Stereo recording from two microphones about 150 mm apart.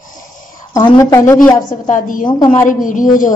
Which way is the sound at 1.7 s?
60° left (ahead or behind).